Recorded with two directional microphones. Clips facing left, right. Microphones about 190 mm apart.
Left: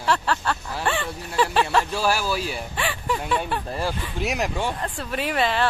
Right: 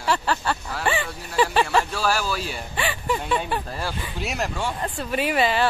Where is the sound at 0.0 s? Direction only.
5° right (ahead or behind).